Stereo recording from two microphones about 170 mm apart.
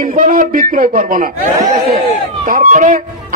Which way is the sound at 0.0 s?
50° right (ahead or behind).